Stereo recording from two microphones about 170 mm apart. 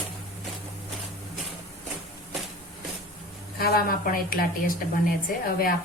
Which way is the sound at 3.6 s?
60° left (ahead or behind).